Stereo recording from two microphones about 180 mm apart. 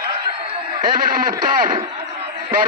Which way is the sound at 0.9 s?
50° right (ahead or behind).